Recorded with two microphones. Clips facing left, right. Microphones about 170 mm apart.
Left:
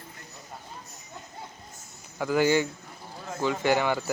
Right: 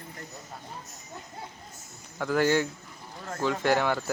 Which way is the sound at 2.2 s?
5° left (ahead or behind).